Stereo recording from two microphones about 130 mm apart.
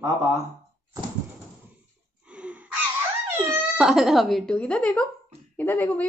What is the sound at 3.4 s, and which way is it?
Speech, 10° right (ahead or behind).